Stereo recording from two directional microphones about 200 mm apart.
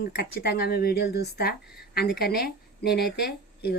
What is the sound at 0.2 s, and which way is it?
A woman's voice, 50° left (ahead or behind).